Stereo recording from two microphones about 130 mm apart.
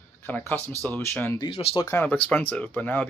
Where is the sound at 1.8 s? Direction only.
15° left (ahead or behind).